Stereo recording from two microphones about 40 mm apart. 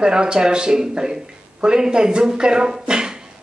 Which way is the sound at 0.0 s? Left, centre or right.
Right.